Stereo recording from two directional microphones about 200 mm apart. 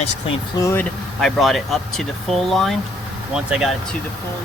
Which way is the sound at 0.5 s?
15° left (ahead or behind).